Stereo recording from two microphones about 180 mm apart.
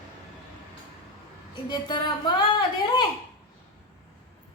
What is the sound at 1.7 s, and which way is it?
A woman's voice, 25° left (ahead or behind).